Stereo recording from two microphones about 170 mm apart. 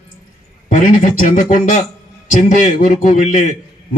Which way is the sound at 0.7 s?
50° left (ahead or behind).